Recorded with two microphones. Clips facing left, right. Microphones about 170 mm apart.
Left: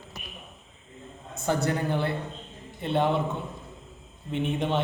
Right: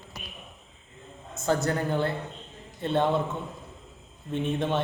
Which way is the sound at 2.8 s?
15° left (ahead or behind).